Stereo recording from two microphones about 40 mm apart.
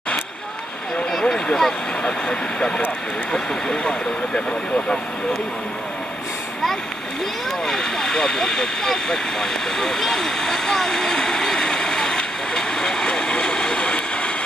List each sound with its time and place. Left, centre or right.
1.2 s speech: centre
7.6 s vehicle: centre